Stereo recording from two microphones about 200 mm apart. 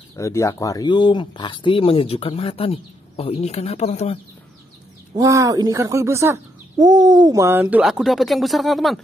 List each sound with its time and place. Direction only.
0.1 s speech: 15° left (ahead or behind); by 4.2 s 30° left (ahead or behind)
5.1 s speech: 15° right (ahead or behind); by 9.0 s centre (ahead or behind)